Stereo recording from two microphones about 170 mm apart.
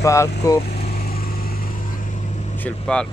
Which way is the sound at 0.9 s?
60° left (ahead or behind).